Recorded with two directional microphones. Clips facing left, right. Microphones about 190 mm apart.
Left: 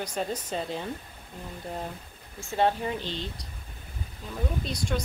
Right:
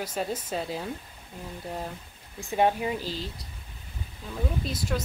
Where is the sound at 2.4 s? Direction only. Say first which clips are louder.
Right 1 dB; 15° right (ahead or behind).